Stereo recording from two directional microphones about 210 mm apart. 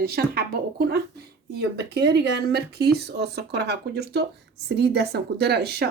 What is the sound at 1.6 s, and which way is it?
A woman's voice, 55° right (ahead or behind).